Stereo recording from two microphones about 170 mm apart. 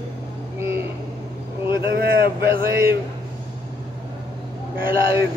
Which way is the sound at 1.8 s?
70° right (ahead or behind).